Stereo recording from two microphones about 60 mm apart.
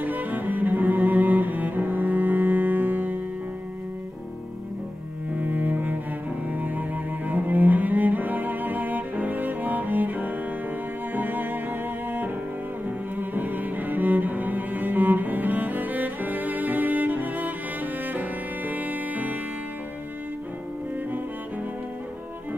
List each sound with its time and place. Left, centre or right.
0.0 s cello: right
5.3 s cello: right
11.1 s music: right
13.1 s cello: right
18.7 s music: right